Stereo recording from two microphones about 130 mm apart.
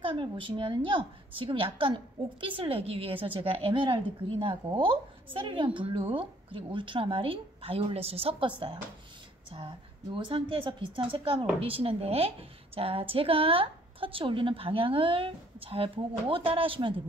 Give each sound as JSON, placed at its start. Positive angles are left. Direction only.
{"t": 0.0, "sound": "a woman's voice", "side_deg": -40}